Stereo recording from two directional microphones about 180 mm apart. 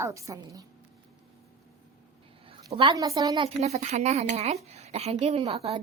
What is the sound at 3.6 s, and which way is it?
Speech, 40° right (ahead or behind).